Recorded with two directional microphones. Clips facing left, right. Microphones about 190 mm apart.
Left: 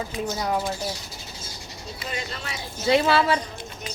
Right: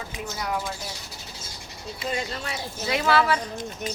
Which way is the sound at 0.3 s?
30° left (ahead or behind).